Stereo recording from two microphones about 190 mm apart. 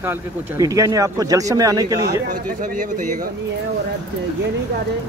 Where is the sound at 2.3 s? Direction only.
45° right (ahead or behind).